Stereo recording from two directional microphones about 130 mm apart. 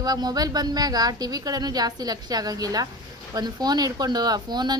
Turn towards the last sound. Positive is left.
turn(degrees=-30)  # may be behind; listen again after turning